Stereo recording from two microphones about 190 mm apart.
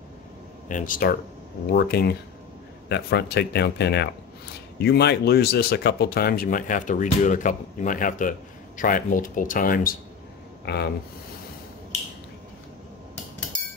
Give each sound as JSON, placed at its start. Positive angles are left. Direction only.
{"t": 0.7, "sound": "speech", "side_deg": 45}
{"t": 1.7, "sound": "speech", "side_deg": 55}
{"t": 10.6, "sound": "speech", "side_deg": 60}